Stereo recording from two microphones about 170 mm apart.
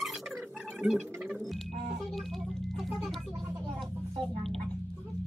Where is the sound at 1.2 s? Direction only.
Centre (ahead or behind).